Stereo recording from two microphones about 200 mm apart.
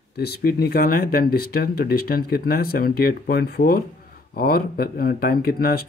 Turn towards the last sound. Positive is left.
turn(degrees=50)  # may be behind; listen again after turning